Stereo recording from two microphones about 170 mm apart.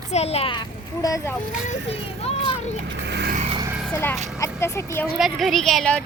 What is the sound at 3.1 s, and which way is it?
Vehicle, 75° right (ahead or behind).